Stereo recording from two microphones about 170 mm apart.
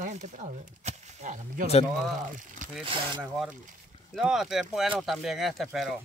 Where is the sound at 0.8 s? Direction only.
45° right (ahead or behind).